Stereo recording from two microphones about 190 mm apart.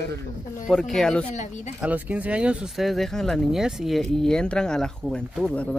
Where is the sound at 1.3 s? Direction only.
40° left (ahead or behind).